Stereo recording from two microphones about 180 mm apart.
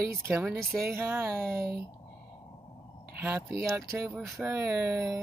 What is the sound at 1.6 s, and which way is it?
Speech, 60° right (ahead or behind).